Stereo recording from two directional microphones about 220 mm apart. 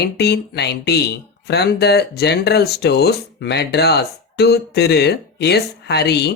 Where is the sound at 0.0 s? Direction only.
50° left (ahead or behind).